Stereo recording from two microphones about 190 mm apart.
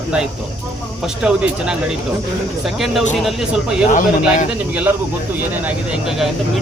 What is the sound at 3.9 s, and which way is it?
Speech, 45° left (ahead or behind).